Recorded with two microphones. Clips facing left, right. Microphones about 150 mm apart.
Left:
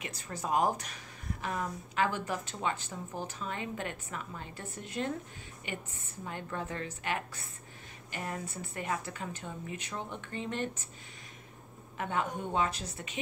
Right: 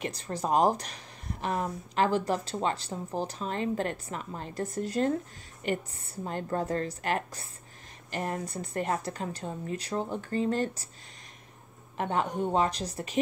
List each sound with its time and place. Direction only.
0.0 s speech: 35° right (ahead or behind)
12.0 s speech: 35° right (ahead or behind)